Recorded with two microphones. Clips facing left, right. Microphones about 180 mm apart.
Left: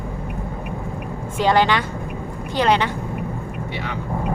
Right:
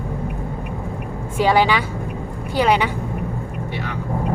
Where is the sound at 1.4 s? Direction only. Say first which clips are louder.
Right 1 dB; 10° right (ahead or behind).